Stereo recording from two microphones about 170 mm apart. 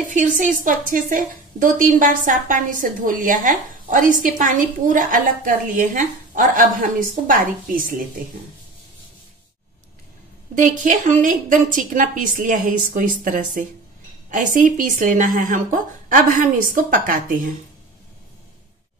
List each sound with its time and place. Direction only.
0.1 s a woman's voice: 50° right (ahead or behind)
10.5 s a woman's voice: 50° right (ahead or behind)